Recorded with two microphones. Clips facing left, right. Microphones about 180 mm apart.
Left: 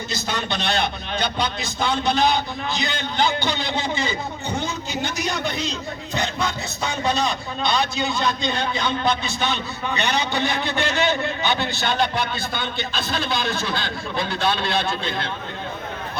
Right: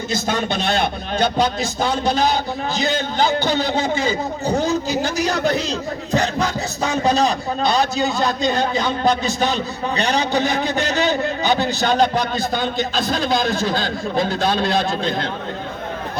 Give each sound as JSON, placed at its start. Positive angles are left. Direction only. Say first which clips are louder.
{"t": 0.1, "sound": "a man's voice", "louder": "right 7 dB", "side_deg": -45}